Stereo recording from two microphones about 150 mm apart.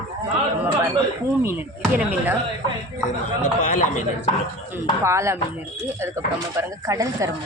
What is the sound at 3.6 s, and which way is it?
Speech, 55° left (ahead or behind).